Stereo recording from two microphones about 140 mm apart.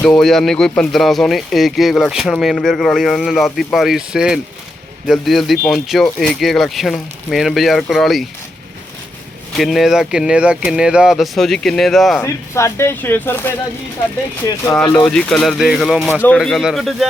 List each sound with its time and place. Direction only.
0.0 s speech: 5° left (ahead or behind)
9.6 s speech: centre (ahead or behind)
12.2 s speech: 20° left (ahead or behind)
15.1 s speech: 5° left (ahead or behind)